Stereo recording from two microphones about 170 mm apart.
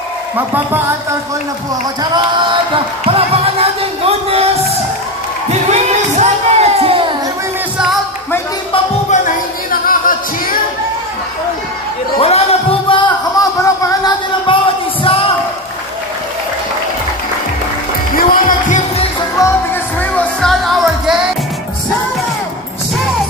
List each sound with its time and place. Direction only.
2.1 s a sound: 30° right (ahead or behind)
5.5 s speech: 40° right (ahead or behind)
9.1 s music: 50° left (ahead or behind)
12.2 s a sound: 35° left (ahead or behind)
18.1 s music: 55° left (ahead or behind)
19.3 s music: 15° left (ahead or behind); by 21.2 s centre (ahead or behind)